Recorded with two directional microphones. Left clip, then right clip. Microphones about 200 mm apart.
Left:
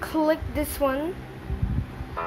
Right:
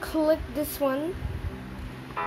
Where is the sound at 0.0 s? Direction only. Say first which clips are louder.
Left 1 dB; 10° left (ahead or behind).